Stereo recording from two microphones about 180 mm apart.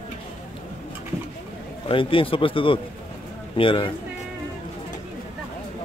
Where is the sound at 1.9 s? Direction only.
30° left (ahead or behind).